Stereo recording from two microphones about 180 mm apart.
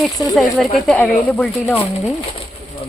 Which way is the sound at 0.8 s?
10° left (ahead or behind).